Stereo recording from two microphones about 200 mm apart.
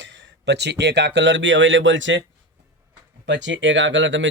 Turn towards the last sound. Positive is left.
turn(degrees=-65)  # may be behind; listen again after turning